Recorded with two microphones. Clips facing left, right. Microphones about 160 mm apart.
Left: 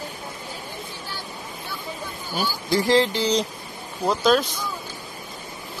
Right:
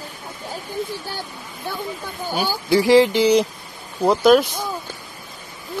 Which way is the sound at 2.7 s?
15° right (ahead or behind).